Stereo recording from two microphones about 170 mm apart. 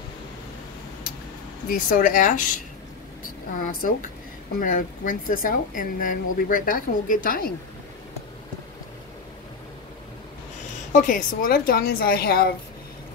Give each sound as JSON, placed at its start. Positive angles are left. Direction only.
{"t": 1.7, "sound": "speech", "side_deg": 55}
{"t": 3.5, "sound": "speech", "side_deg": 55}
{"t": 10.9, "sound": "a woman's voice", "side_deg": 50}